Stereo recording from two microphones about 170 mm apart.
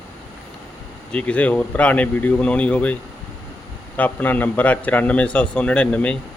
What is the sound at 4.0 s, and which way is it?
Speech, 10° left (ahead or behind).